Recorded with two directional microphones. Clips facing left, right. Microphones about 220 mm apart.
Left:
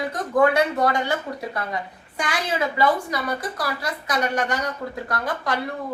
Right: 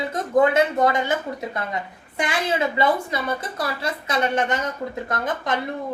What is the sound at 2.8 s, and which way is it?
A woman's voice, 25° right (ahead or behind).